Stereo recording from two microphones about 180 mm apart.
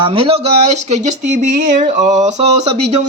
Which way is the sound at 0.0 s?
30° right (ahead or behind).